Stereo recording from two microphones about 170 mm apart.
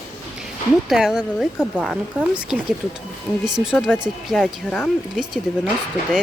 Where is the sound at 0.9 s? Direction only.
Centre (ahead or behind).